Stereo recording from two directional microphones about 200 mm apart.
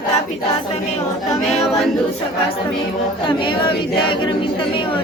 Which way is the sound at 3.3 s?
25° left (ahead or behind).